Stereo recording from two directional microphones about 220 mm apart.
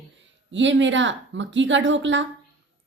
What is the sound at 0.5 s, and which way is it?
A woman's voice, 55° right (ahead or behind).